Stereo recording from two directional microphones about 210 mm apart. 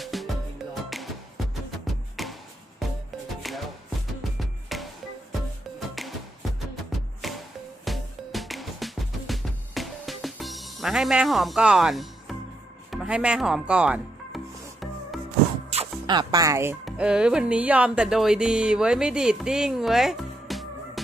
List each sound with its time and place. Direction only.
0.0 s music: centre (ahead or behind)
2.2 s music: centre (ahead or behind)
3.4 s music: centre (ahead or behind)
5.9 s music: centre (ahead or behind)
7.2 s music: centre (ahead or behind)
15.7 s music: 25° right (ahead or behind)
16.8 s speech: 5° right (ahead or behind)